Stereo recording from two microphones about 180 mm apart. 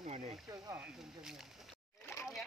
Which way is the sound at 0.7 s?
5° right (ahead or behind).